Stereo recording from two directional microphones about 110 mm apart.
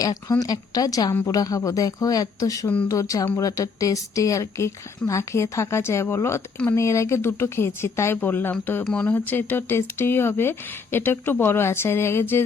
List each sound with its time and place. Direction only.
0.0 s a woman's voice: 35° left (ahead or behind)
8.8 s a woman's voice: 5° left (ahead or behind)